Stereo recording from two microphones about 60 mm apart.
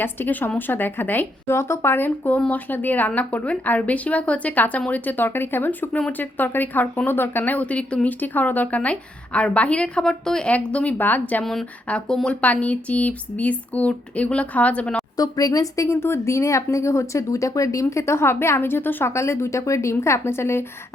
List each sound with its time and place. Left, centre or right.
0.0 s speech: left
1.5 s a woman's voice: left; by 8.1 s centre
8.2 s speech: left
11.9 s a woman's voice: centre
15.1 s speech: left
17.8 s a woman's voice: left
19.1 s a woman's voice: left